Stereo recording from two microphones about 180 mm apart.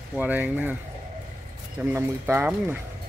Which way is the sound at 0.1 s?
10° right (ahead or behind).